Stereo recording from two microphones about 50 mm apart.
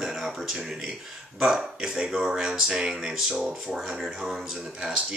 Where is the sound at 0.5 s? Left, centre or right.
Centre.